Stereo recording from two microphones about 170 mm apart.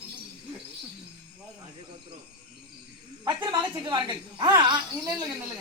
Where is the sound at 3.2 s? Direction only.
25° right (ahead or behind).